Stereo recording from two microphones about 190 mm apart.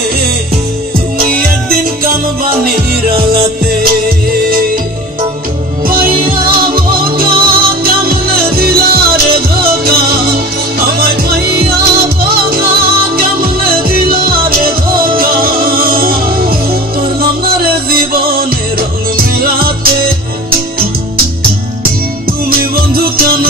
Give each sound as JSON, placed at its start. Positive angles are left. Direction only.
{"t": 2.0, "sound": "music", "side_deg": -50}
{"t": 5.9, "sound": "music", "side_deg": -50}
{"t": 22.6, "sound": "music", "side_deg": -50}